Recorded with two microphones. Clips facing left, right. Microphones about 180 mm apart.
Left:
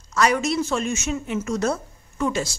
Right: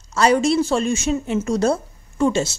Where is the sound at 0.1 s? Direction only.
30° right (ahead or behind).